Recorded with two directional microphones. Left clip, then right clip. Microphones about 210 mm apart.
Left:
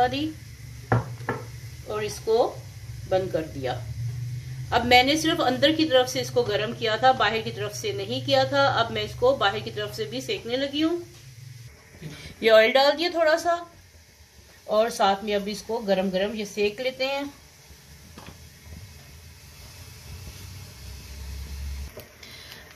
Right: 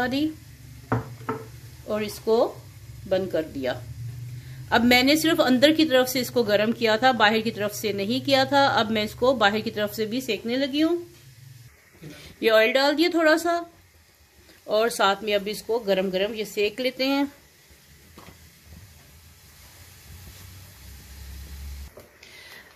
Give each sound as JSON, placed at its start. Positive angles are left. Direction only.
{"t": 1.9, "sound": "a woman's voice", "side_deg": -55}
{"t": 12.2, "sound": "speech", "side_deg": -25}
{"t": 14.7, "sound": "a woman's voice", "side_deg": -50}